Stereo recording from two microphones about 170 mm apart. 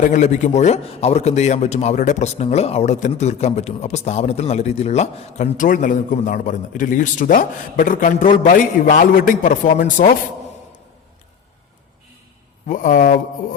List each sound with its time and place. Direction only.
0.0 s a man's voice: 45° left (ahead or behind)
12.6 s a man's voice: 50° left (ahead or behind)